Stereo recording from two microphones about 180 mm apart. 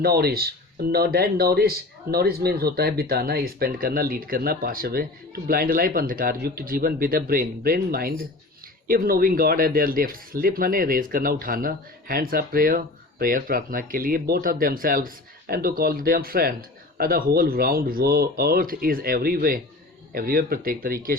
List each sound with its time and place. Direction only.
0.0 s speech: 60° right (ahead or behind)